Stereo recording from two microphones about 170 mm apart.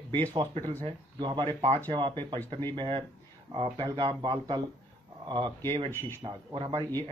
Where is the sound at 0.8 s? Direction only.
30° right (ahead or behind).